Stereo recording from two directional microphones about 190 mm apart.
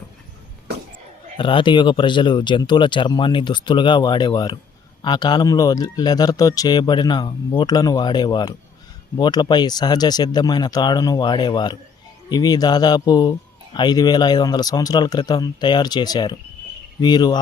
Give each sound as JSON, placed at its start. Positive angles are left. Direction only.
{"t": 1.4, "sound": "speech", "side_deg": 25}